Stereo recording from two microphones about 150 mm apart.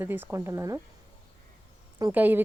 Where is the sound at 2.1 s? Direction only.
15° right (ahead or behind).